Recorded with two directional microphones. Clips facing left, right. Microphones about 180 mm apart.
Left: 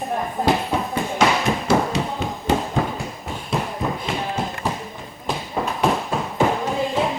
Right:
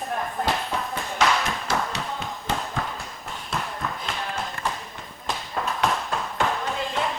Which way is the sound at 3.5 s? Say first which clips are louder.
Left 6 dB; 5° left (ahead or behind).